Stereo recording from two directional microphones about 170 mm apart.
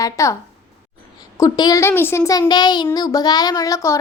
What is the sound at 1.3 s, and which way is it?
A child's voice, 25° left (ahead or behind).